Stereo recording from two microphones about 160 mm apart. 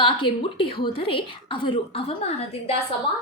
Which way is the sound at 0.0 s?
30° left (ahead or behind).